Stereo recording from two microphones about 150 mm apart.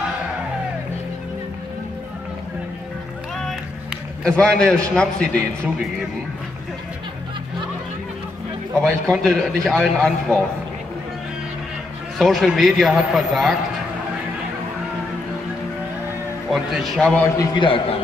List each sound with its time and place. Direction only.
3.3 s a man's voice: 5° left (ahead or behind)
8.8 s a man's voice: 5° left (ahead or behind)
12.2 s a man's voice: centre (ahead or behind)
16.4 s a man's voice: centre (ahead or behind)
17.4 s a man's voice: 35° left (ahead or behind)